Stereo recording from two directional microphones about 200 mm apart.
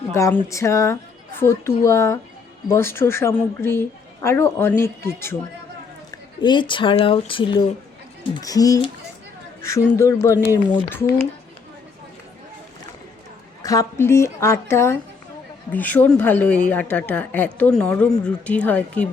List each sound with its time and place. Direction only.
0.1 s a woman's voice: 15° left (ahead or behind)
6.1 s a woman's voice: 20° left (ahead or behind)
13.6 s a woman's voice: 15° left (ahead or behind)